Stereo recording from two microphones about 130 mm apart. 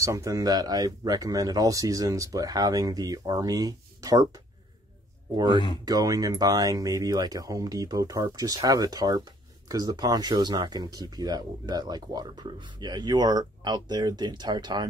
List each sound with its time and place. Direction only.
0.0 s speech: 25° right (ahead or behind)